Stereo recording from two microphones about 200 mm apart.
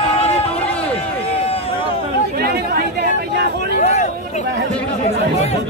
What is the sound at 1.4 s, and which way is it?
Run, 30° left (ahead or behind).